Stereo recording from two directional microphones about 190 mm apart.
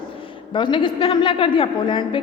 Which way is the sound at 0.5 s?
25° left (ahead or behind).